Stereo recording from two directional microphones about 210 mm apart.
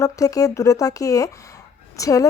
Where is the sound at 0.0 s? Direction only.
15° left (ahead or behind).